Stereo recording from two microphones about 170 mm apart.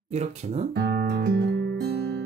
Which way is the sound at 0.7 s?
85° right.